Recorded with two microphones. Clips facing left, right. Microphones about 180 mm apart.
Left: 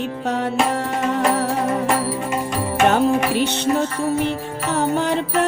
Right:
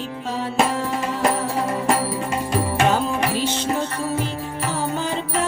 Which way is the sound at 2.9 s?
65° left (ahead or behind).